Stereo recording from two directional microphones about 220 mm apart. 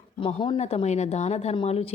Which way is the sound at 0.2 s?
25° left (ahead or behind).